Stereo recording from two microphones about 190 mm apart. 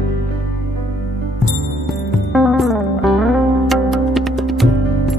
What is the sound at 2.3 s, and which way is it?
Music, centre (ahead or behind).